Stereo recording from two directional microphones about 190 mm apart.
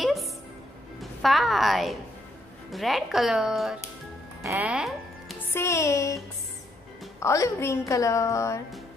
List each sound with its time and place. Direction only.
0.0 s music: centre (ahead or behind)
1.2 s speech: centre (ahead or behind)
4.4 s music: 10° right (ahead or behind)
5.5 s a woman's voice: 15° left (ahead or behind)
7.2 s a woman's voice: 15° left (ahead or behind)